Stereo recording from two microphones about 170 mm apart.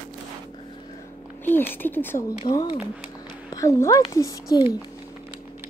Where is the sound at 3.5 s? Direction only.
15° left (ahead or behind).